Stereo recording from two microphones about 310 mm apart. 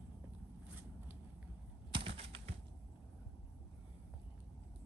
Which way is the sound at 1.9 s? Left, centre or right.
Centre.